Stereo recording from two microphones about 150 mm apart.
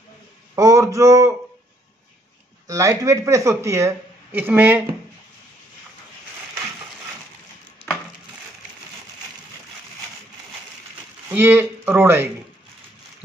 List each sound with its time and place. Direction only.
0.6 s speech: 20° right (ahead or behind)
2.7 s speech: 20° right (ahead or behind)
11.2 s speech: 15° right (ahead or behind)